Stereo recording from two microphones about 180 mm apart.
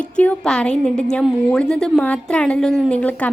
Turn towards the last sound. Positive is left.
turn(degrees=5)  # may be behind; listen again after turning